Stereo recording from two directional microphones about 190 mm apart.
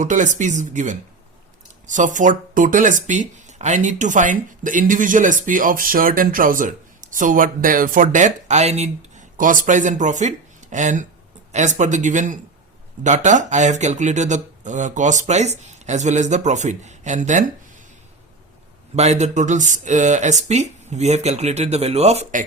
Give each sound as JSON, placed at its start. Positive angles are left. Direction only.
{"t": 0.0, "sound": "speech", "side_deg": -40}
{"t": 18.9, "sound": "speech", "side_deg": -35}